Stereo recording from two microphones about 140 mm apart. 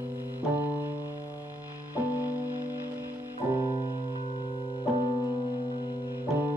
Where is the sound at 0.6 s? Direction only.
15° right (ahead or behind).